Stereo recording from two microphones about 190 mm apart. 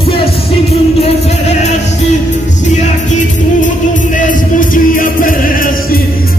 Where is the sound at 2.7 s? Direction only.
40° left (ahead or behind).